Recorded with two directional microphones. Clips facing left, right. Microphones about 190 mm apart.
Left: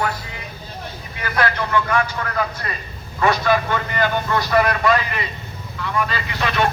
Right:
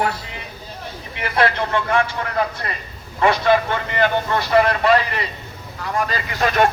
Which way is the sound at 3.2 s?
25° right (ahead or behind).